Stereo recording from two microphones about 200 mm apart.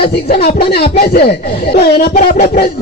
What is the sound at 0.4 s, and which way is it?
Speech, 50° left (ahead or behind).